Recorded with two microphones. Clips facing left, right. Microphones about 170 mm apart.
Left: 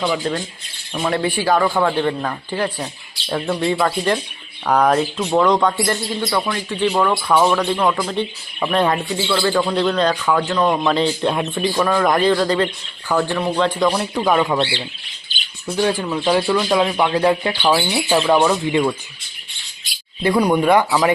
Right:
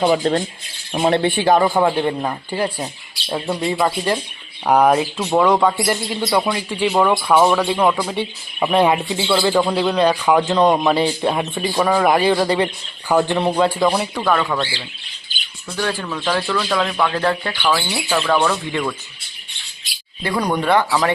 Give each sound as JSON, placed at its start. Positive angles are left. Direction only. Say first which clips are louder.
{"t": 0.0, "sound": "speech", "louder": "right 5 dB", "side_deg": -40}
{"t": 0.9, "sound": "speech", "louder": "right 3 dB", "side_deg": -30}
{"t": 13.5, "sound": "speech", "louder": "left 1 dB", "side_deg": -10}
{"t": 14.2, "sound": "speech", "louder": "left 2 dB", "side_deg": 15}
{"t": 15.8, "sound": "speech", "louder": "left 4 dB", "side_deg": 15}
{"t": 20.2, "sound": "speech", "louder": "left 4 dB", "side_deg": 10}